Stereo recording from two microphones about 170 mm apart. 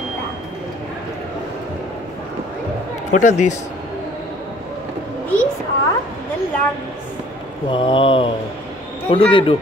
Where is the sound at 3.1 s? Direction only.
45° left (ahead or behind).